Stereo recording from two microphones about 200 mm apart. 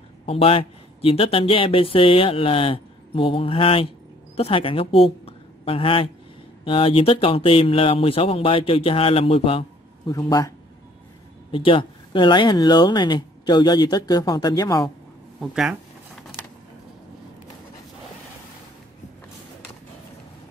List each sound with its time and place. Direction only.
0.3 s speech: 30° left (ahead or behind)
5.2 s a sound: 25° left (ahead or behind)
6.6 s speech: 25° left (ahead or behind)
11.5 s speech: 25° left (ahead or behind)
15.4 s speech: centre (ahead or behind)